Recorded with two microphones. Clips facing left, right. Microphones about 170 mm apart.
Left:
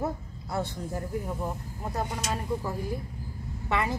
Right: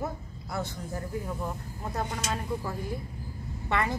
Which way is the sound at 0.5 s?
30° left (ahead or behind).